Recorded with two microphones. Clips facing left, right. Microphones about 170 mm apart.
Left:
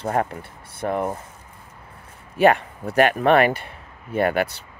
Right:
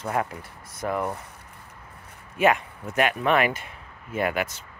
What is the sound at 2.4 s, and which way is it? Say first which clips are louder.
Speech: left 5 dB; 35° left (ahead or behind).